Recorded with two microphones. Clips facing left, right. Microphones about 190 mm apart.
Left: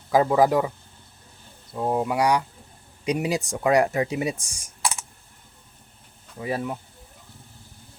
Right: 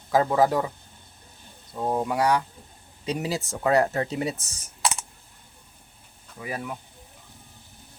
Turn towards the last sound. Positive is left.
turn(degrees=25)  # may be behind; listen again after turning